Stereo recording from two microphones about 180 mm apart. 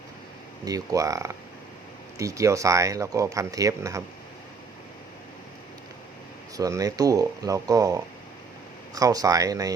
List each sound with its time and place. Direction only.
0.6 s speech: 20° right (ahead or behind)
6.6 s speech: 20° right (ahead or behind)